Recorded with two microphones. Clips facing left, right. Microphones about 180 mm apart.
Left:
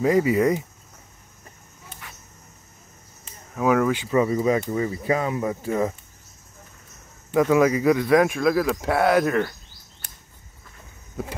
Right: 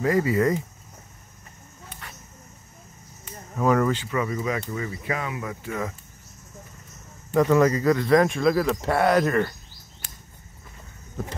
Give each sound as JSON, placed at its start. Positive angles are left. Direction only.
{"t": 0.0, "sound": "speech", "side_deg": 15}
{"t": 3.5, "sound": "speech", "side_deg": 5}
{"t": 4.1, "sound": "speech", "side_deg": 30}
{"t": 7.3, "sound": "speech", "side_deg": 5}